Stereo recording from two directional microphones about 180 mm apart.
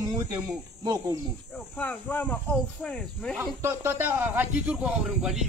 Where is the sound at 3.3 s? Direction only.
10° right (ahead or behind).